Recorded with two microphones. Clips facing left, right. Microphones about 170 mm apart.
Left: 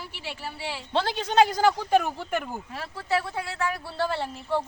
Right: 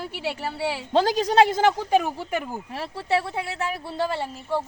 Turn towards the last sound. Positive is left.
turn(degrees=-5)  # may be behind; listen again after turning